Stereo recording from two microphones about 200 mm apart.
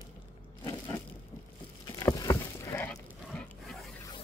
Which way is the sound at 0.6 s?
15° left (ahead or behind).